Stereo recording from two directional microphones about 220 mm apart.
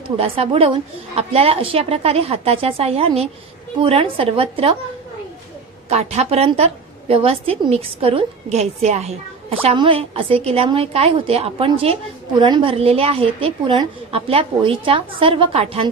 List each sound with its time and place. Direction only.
0.2 s a woman's voice: 25° right (ahead or behind)
5.9 s a woman's voice: 30° right (ahead or behind)